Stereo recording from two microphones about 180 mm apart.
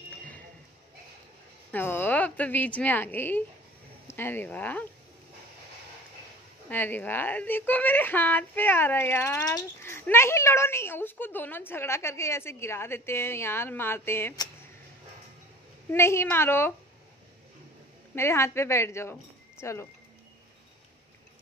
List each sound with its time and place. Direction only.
1.7 s a woman's voice: 10° left (ahead or behind)
6.7 s a woman's voice: 10° left (ahead or behind)
15.9 s a woman's voice: 15° left (ahead or behind)
18.1 s a woman's voice: 15° left (ahead or behind)